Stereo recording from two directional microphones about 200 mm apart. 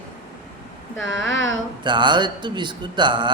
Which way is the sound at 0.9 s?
70° left (ahead or behind).